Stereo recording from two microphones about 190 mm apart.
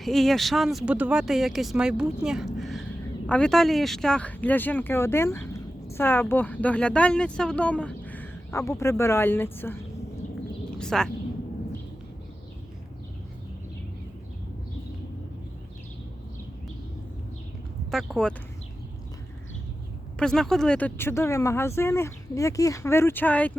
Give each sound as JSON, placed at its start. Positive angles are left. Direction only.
{"t": 0.0, "sound": "a woman's voice", "side_deg": 0}
{"t": 17.9, "sound": "speech", "side_deg": 0}
{"t": 20.1, "sound": "speech", "side_deg": 5}